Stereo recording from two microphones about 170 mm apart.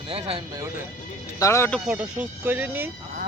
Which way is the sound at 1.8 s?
10° right (ahead or behind).